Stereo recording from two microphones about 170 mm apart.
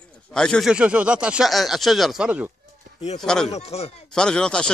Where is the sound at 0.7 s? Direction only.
5° right (ahead or behind).